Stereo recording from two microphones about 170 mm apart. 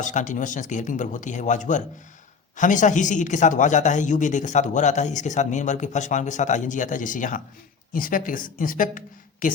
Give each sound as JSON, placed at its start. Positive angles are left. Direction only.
{"t": 0.0, "sound": "a man's voice", "side_deg": 45}